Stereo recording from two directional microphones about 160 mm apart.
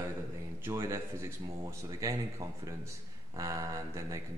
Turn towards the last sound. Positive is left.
turn(degrees=-20)  # may be behind; listen again after turning